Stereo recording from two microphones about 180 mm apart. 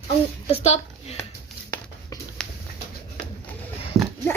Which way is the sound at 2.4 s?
5° left (ahead or behind).